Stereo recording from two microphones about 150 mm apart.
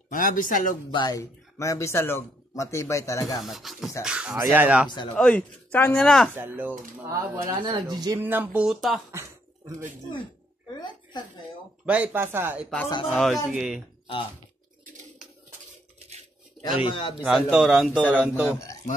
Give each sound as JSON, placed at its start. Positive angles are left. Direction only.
{"t": 0.1, "sound": "speech", "side_deg": 65}
{"t": 0.9, "sound": "speech", "side_deg": 25}
{"t": 3.4, "sound": "speech", "side_deg": 0}
{"t": 4.8, "sound": "speech", "side_deg": 30}
{"t": 5.1, "sound": "speech", "side_deg": 10}
{"t": 6.3, "sound": "speech", "side_deg": -15}
{"t": 8.2, "sound": "speech", "side_deg": -15}
{"t": 9.1, "sound": "a sound", "side_deg": -20}
{"t": 11.8, "sound": "speech", "side_deg": -10}
{"t": 13.1, "sound": "speech", "side_deg": 0}
{"t": 16.6, "sound": "speech", "side_deg": 35}
{"t": 17.2, "sound": "speech", "side_deg": -5}